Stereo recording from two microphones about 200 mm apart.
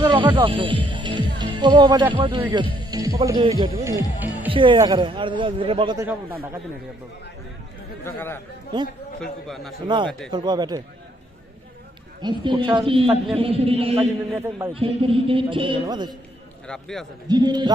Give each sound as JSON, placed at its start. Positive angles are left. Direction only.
{"t": 0.0, "sound": "speech", "side_deg": -10}
{"t": 0.4, "sound": "a man's voice", "side_deg": -25}
{"t": 0.9, "sound": "music", "side_deg": -25}
{"t": 1.4, "sound": "a man's voice", "side_deg": -20}
{"t": 8.0, "sound": "speech", "side_deg": 10}
{"t": 8.7, "sound": "a man's voice", "side_deg": -20}
{"t": 9.2, "sound": "a man's voice", "side_deg": 0}
{"t": 9.8, "sound": "a man's voice", "side_deg": -25}
{"t": 12.2, "sound": "a man's voice", "side_deg": -25}
{"t": 14.3, "sound": "a man's voice", "side_deg": -10}
{"t": 14.7, "sound": "a man's voice", "side_deg": -25}
{"t": 16.6, "sound": "a man's voice", "side_deg": 5}
{"t": 17.2, "sound": "a man's voice", "side_deg": -20}